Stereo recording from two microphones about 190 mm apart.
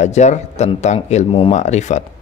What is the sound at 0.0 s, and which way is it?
A man's voice, 35° left (ahead or behind).